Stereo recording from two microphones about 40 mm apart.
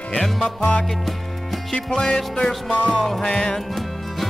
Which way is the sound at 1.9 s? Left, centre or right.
Centre.